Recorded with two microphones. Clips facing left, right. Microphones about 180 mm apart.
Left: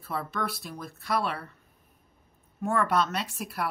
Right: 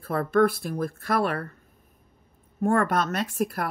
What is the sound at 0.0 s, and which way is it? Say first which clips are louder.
Speech: right 11 dB; 50° right (ahead or behind).